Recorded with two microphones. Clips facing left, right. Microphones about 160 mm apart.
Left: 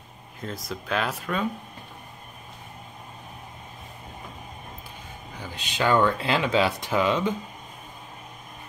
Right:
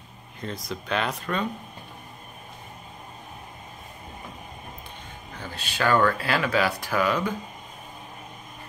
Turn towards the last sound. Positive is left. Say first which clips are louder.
# left 1 dB
turn(degrees=20)  # may be behind; listen again after turning